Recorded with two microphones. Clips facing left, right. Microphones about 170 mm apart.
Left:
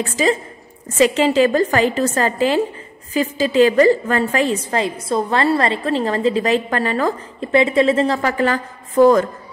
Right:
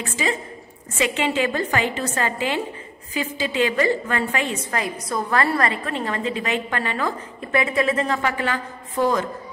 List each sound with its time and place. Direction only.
0.1 s a woman's voice: 40° left (ahead or behind)
7.3 s a woman's voice: 25° left (ahead or behind); by 9.2 s 45° left (ahead or behind)